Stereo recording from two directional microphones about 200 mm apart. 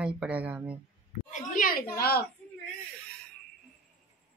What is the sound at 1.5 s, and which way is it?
Speech, 45° left (ahead or behind).